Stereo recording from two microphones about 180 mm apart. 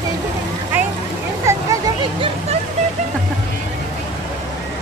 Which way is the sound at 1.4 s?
15° right (ahead or behind).